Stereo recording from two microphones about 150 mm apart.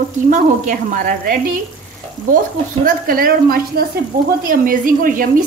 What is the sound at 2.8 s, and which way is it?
A woman's voice, 70° right (ahead or behind).